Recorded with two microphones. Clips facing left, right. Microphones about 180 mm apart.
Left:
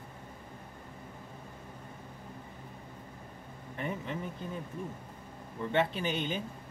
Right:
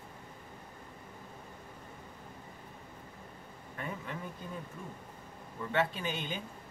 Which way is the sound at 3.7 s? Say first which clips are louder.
Left 4 dB; 25° left (ahead or behind).